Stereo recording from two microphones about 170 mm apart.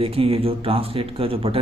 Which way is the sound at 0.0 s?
35° right (ahead or behind).